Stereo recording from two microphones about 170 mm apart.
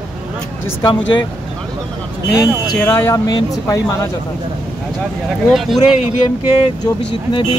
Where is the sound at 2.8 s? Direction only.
15° left (ahead or behind).